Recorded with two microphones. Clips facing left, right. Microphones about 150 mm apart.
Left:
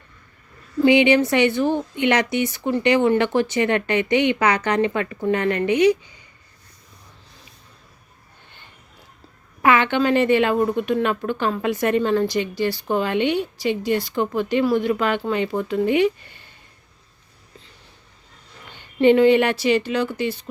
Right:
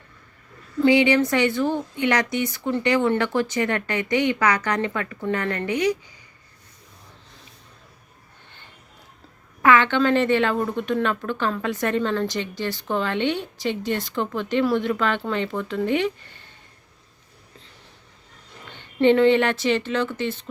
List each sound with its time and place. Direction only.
0.8 s speech: 20° left (ahead or behind)
9.6 s a woman's voice: 20° left (ahead or behind)
18.9 s a woman's voice: 5° left (ahead or behind)